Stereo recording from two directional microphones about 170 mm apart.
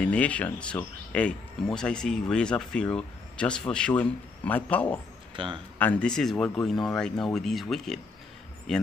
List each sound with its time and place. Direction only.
0.0 s speech: 5° left (ahead or behind)
5.3 s speech: 30° right (ahead or behind)
5.8 s speech: 10° left (ahead or behind)